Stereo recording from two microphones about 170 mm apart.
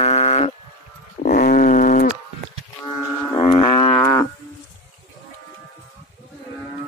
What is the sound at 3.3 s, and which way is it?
Livestock, 30° left (ahead or behind).